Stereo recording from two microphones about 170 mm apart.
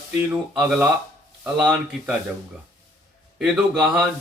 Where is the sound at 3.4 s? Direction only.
5° right (ahead or behind).